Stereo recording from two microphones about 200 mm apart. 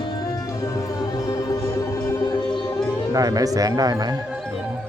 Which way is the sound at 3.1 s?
20° right (ahead or behind).